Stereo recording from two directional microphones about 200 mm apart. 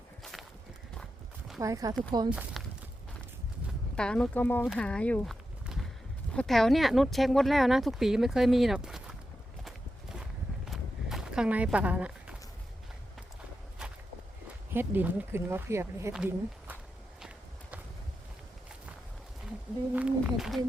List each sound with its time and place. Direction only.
1.5 s speech: 15° right (ahead or behind)
2.3 s speech: centre (ahead or behind)
3.9 s speech: 5° left (ahead or behind)
9.6 s clip-clop: centre (ahead or behind)
10.7 s a sound: centre (ahead or behind)
14.7 s speech: 10° right (ahead or behind)
17.2 s walk: 5° right (ahead or behind)
19.9 s speech: 5° right (ahead or behind)